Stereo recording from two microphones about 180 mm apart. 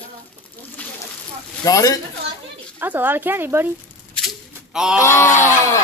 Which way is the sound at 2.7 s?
10° right (ahead or behind).